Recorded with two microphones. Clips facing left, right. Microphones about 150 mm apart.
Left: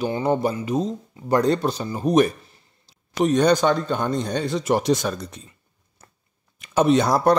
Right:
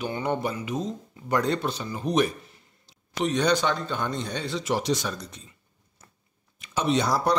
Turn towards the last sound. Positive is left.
turn(degrees=50)  # may be behind; listen again after turning